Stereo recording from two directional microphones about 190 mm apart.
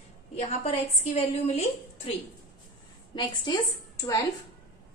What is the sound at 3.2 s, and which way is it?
A woman's voice, 20° left (ahead or behind).